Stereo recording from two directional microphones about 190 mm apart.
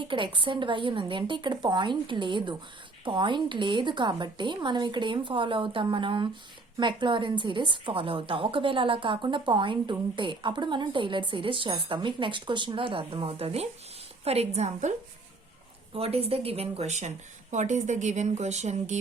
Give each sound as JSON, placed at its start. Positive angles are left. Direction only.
{"t": 0.0, "sound": "a woman's voice", "side_deg": -25}